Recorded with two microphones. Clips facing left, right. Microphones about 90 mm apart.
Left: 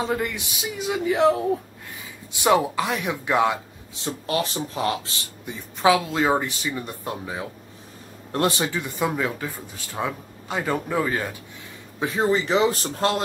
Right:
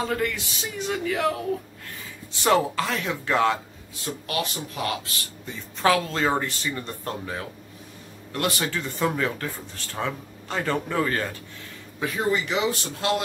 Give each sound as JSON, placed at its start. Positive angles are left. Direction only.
{"t": 0.0, "sound": "speech", "side_deg": 20}
{"t": 1.0, "sound": "speech", "side_deg": 25}
{"t": 5.4, "sound": "speech", "side_deg": 10}
{"t": 8.3, "sound": "speech", "side_deg": 25}
{"t": 12.0, "sound": "speech", "side_deg": 25}